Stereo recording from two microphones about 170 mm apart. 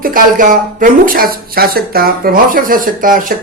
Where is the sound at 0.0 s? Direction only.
55° right (ahead or behind).